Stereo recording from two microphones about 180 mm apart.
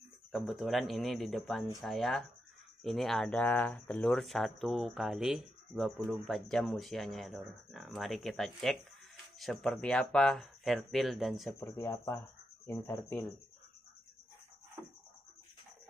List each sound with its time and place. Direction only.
0.3 s speech: centre (ahead or behind)
11.6 s speech: 15° left (ahead or behind)